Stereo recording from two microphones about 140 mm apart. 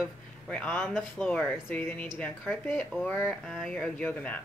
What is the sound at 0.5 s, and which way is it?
Speech, 10° left (ahead or behind).